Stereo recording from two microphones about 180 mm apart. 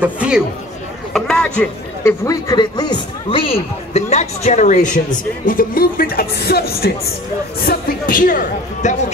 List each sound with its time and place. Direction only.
0.0 s speech: 5° right (ahead or behind)
1.1 s speech: 5° left (ahead or behind)
2.2 s a man's voice: 20° left (ahead or behind); by 6.9 s 60° left (ahead or behind)
7.6 s speech: 50° left (ahead or behind)